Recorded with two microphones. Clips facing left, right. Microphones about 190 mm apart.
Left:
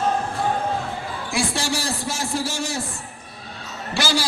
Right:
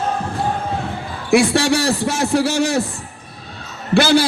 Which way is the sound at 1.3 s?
65° right (ahead or behind).